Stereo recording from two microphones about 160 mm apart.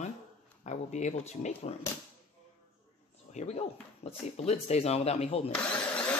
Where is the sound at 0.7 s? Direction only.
45° left (ahead or behind).